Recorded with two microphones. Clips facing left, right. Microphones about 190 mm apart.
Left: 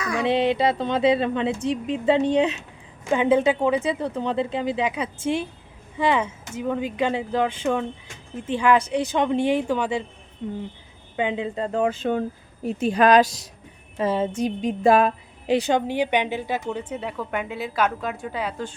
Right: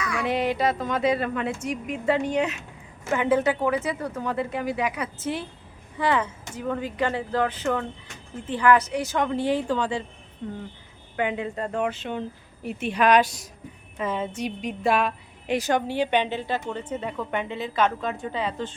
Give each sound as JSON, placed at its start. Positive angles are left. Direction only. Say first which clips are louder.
{"t": 0.2, "sound": "a woman's voice", "louder": "left 4 dB", "side_deg": 25}
{"t": 11.9, "sound": "a woman's voice", "louder": "left 6 dB", "side_deg": 45}
{"t": 15.9, "sound": "a woman's voice", "louder": "left 1 dB", "side_deg": 15}